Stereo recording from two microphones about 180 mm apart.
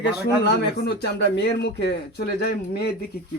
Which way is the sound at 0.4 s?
65° left (ahead or behind).